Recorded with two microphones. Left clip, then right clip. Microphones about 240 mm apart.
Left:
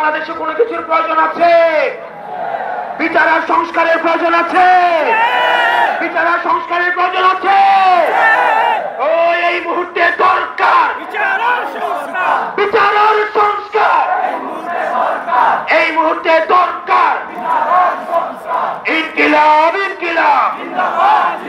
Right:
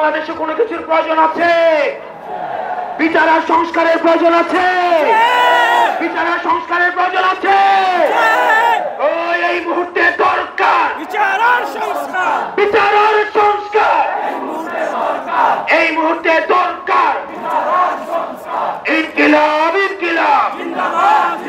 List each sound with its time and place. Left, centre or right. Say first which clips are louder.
0.8 s a man's voice: right 3 dB; right
3.0 s music: even; right
12.5 s battle cry: right 1 dB; right
15.3 s battle cry: left 1 dB; right
18.9 s battle cry: right 1 dB; right